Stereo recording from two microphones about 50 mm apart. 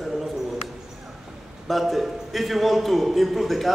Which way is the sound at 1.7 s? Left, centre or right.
Centre.